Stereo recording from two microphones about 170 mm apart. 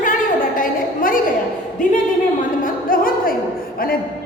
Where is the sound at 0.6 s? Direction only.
55° left (ahead or behind).